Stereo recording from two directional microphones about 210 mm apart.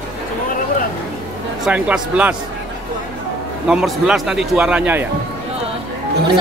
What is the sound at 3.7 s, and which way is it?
Speech, 5° right (ahead or behind).